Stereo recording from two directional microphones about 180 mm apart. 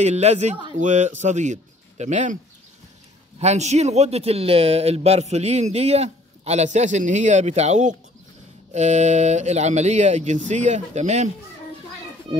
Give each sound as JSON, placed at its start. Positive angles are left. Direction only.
{"t": 0.0, "sound": "speech", "side_deg": -40}
{"t": 3.3, "sound": "speech", "side_deg": -40}
{"t": 12.3, "sound": "speech", "side_deg": -30}